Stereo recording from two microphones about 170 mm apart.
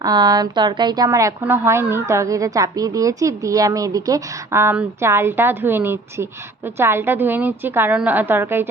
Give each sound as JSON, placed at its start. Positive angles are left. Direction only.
{"t": 0.0, "sound": "a woman's voice", "side_deg": -20}